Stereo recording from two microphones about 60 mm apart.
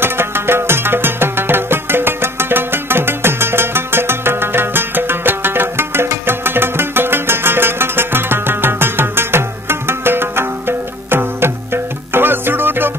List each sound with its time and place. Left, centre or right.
0.0 s music: right